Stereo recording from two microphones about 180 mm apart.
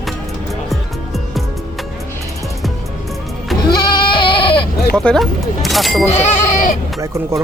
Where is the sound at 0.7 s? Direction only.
Centre (ahead or behind).